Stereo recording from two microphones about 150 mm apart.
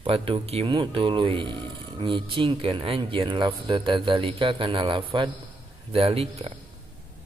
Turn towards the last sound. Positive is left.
turn(degrees=-40)  # may be behind; listen again after turning